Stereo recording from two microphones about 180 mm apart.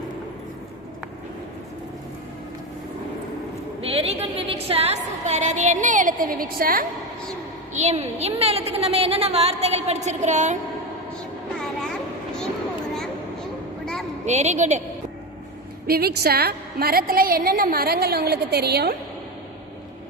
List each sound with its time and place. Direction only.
3.8 s a sound: 35° right (ahead or behind); by 6.8 s 50° right (ahead or behind)
7.7 s a woman's voice: 40° right (ahead or behind)
14.3 s a woman's voice: 40° right (ahead or behind)
15.9 s a woman's voice: 60° right (ahead or behind)